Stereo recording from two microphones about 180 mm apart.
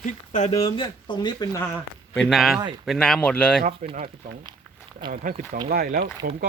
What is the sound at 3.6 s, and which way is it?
Speech, 35° right (ahead or behind).